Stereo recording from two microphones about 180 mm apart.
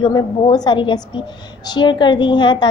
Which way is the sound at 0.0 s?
25° left (ahead or behind).